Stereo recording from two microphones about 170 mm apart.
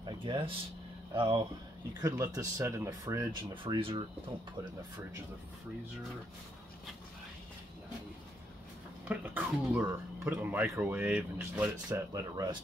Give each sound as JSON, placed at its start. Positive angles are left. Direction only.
{"t": 0.0, "sound": "a sound", "side_deg": -30}
{"t": 1.1, "sound": "speech", "side_deg": -30}
{"t": 2.0, "sound": "speech", "side_deg": -20}
{"t": 3.6, "sound": "speech", "side_deg": -30}
{"t": 9.0, "sound": "speech", "side_deg": -10}
{"t": 12.1, "sound": "speech", "side_deg": -20}